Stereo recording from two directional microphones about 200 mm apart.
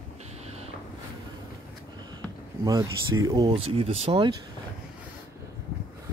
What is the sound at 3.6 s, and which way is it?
Speech, 30° right (ahead or behind).